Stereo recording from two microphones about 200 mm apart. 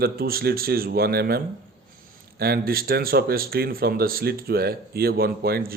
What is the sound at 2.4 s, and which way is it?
Speech, 50° right (ahead or behind).